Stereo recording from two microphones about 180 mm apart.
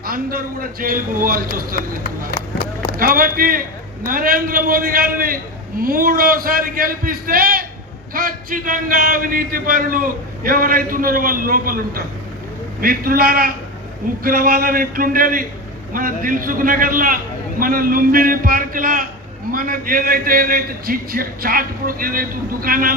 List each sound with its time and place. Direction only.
0.0 s a man's voice: 55° right (ahead or behind)